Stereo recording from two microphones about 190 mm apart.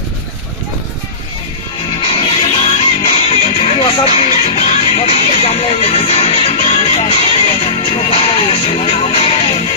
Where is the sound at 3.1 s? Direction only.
35° left (ahead or behind).